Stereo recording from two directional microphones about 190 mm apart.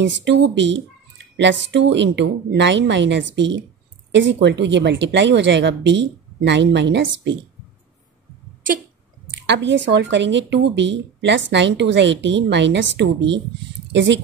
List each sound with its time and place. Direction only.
0.0 s speech: 70° right (ahead or behind)
9.5 s speech: 70° right (ahead or behind)